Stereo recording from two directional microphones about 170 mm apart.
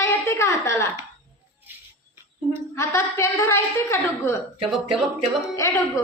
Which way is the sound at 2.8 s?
15° left (ahead or behind).